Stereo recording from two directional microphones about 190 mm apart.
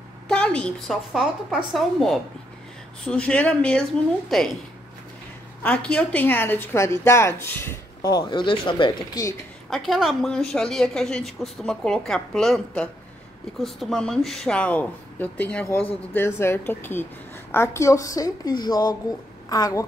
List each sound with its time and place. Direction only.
0.3 s a woman's voice: 5° left (ahead or behind)
5.6 s a woman's voice: 5° left (ahead or behind); by 9.3 s 20° left (ahead or behind)
9.7 s a woman's voice: centre (ahead or behind); by 19.9 s 20° left (ahead or behind)